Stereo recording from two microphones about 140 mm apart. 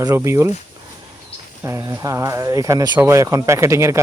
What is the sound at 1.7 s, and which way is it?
Speech, 20° right (ahead or behind).